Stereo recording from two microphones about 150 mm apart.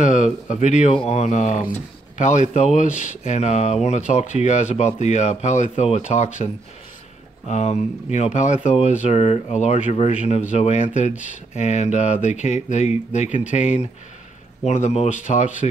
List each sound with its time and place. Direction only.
0.0 s speech: 55° left (ahead or behind)